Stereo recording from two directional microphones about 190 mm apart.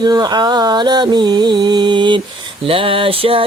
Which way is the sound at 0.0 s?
20° right (ahead or behind).